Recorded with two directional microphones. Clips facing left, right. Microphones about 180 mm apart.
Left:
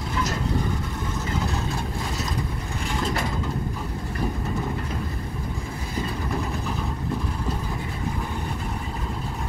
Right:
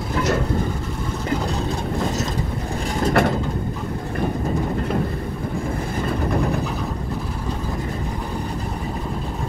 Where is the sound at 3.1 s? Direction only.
65° right (ahead or behind).